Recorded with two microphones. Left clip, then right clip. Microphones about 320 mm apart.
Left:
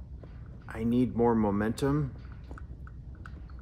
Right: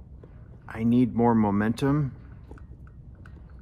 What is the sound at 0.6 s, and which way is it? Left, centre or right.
Speech, right.